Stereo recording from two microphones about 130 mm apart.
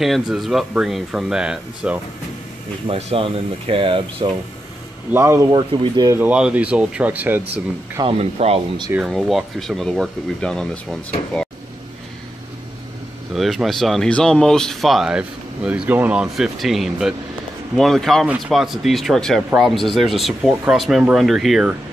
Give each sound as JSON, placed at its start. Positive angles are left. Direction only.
{"t": 0.0, "sound": "speech", "side_deg": 0}
{"t": 2.9, "sound": "speech", "side_deg": -50}
{"t": 5.1, "sound": "speech", "side_deg": -25}
{"t": 5.7, "sound": "speech", "side_deg": -40}
{"t": 6.0, "sound": "speech", "side_deg": -15}
{"t": 8.0, "sound": "speech", "side_deg": -50}
{"t": 8.9, "sound": "speech", "side_deg": 0}
{"t": 13.3, "sound": "speech", "side_deg": 0}